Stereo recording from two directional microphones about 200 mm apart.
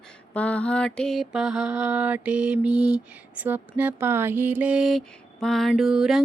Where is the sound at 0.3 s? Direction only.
5° left (ahead or behind).